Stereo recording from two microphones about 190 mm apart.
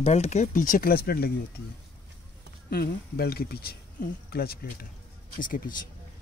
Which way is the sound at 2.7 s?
55° left (ahead or behind).